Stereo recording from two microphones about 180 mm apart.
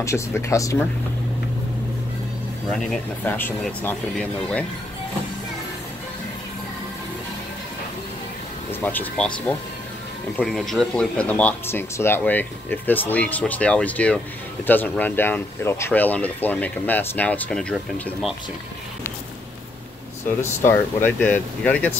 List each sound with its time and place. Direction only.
0.0 s speech: 15° left (ahead or behind)
2.7 s speech: 10° left (ahead or behind)
8.8 s speech: 5° left (ahead or behind)
20.2 s speech: 10° left (ahead or behind)